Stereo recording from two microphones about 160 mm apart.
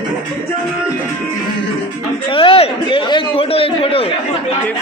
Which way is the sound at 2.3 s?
35° left (ahead or behind).